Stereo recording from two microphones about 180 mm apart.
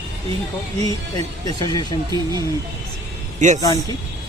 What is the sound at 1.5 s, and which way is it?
Speech, 25° left (ahead or behind).